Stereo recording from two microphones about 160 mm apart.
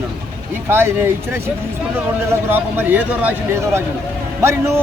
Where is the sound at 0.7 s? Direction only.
15° right (ahead or behind).